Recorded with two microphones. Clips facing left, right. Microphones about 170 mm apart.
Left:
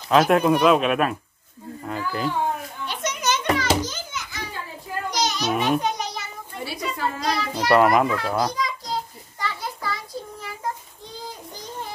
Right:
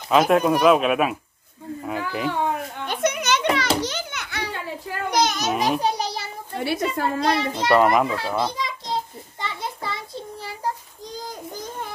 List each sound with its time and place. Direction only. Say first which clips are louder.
0.1 s speech: even; centre (ahead or behind)
2.8 s children playing: right 7 dB; 55° right (ahead or behind)
3.8 s music: right 3 dB; 70° right (ahead or behind); by 5.5 s 50° right (ahead or behind)
5.6 s a child's voice: right 1 dB; 35° right (ahead or behind)
6.5 s a woman's voice: right 7 dB; 65° right (ahead or behind)
7.5 s speech: left 2 dB; centre (ahead or behind)
8.5 s child singing: even; 25° right (ahead or behind)
11.1 s a sound: right 3 dB; 45° right (ahead or behind)